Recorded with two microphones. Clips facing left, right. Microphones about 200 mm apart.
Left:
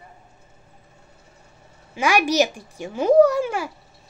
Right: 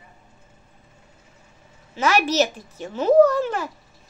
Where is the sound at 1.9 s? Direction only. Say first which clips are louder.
Left 1 dB; 10° left (ahead or behind).